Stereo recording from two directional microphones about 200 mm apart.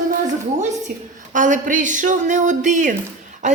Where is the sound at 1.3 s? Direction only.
40° right (ahead or behind).